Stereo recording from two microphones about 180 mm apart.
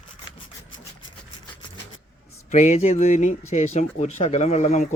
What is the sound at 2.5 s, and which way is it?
Speech, 40° left (ahead or behind).